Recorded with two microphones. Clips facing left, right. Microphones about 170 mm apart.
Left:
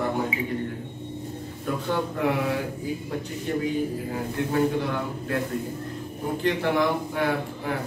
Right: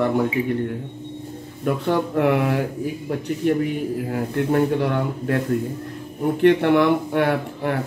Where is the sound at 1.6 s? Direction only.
65° right (ahead or behind).